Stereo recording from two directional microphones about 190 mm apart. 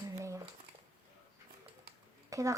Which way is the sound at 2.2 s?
15° right (ahead or behind).